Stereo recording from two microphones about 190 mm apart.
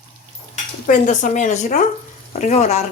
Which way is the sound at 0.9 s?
40° left (ahead or behind).